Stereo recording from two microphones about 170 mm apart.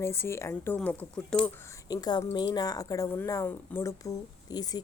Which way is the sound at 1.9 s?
25° left (ahead or behind).